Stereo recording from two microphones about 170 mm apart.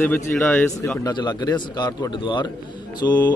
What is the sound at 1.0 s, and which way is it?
Speech, 25° left (ahead or behind).